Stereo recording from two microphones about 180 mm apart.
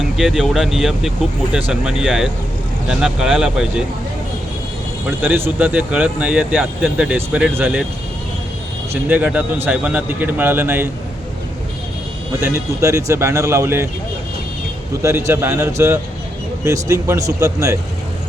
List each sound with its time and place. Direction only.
0.0 s speech: centre (ahead or behind)
5.2 s speech: 10° right (ahead or behind)
8.9 s speech: 10° right (ahead or behind)
12.4 s speech: 15° right (ahead or behind)
15.0 s speech: 15° right (ahead or behind)